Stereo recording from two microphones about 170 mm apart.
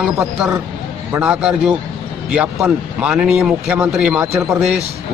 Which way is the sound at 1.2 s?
5° right (ahead or behind).